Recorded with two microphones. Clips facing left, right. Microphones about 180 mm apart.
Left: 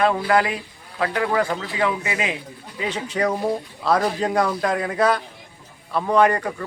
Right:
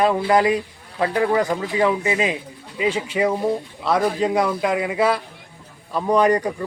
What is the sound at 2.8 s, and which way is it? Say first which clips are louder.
A man's voice: right 3 dB; 5° right (ahead or behind).